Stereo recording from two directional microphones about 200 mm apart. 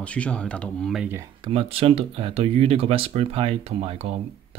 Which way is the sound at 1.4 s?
30° right (ahead or behind).